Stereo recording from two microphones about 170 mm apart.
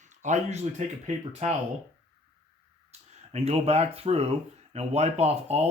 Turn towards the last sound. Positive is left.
turn(degrees=-40)  # may be behind; listen again after turning